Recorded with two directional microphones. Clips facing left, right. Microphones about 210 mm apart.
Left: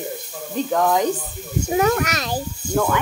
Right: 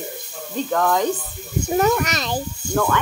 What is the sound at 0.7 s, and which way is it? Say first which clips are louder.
Speech: left 1 dB; 15° left (ahead or behind).